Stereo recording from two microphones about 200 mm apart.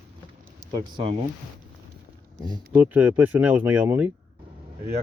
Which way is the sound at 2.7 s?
10° right (ahead or behind).